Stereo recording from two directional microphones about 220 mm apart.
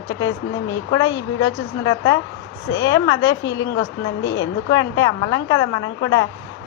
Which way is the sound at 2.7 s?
15° left (ahead or behind).